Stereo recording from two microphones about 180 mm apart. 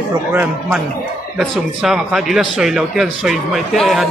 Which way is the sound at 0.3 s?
10° right (ahead or behind).